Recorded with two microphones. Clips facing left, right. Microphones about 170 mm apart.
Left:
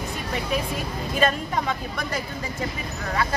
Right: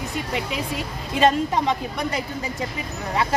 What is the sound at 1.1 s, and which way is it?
Speech, 20° right (ahead or behind).